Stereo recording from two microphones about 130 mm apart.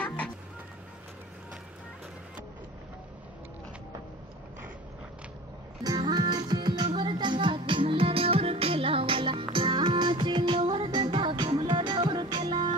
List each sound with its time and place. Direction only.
0.0 s music: 10° left (ahead or behind)
5.9 s music: 35° right (ahead or behind)